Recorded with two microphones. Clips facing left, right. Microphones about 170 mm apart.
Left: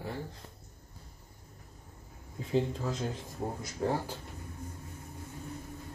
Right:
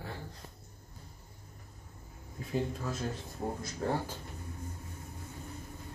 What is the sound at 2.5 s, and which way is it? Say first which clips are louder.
Speech: left 4 dB; 20° left (ahead or behind).